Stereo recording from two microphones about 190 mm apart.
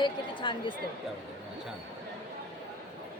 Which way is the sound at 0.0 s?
25° left (ahead or behind).